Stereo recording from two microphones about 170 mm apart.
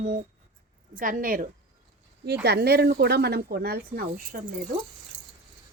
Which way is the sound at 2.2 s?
75° right (ahead or behind).